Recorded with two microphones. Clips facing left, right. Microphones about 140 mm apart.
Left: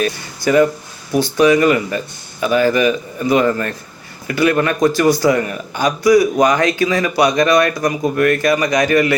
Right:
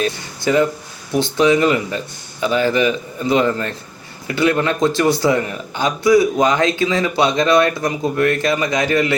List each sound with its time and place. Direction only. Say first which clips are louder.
0.0 s a man's voice: left 2 dB; 20° right (ahead or behind)
7.8 s speech: left 2 dB; 20° left (ahead or behind)
8.2 s a man's voice: left 3 dB; 25° right (ahead or behind)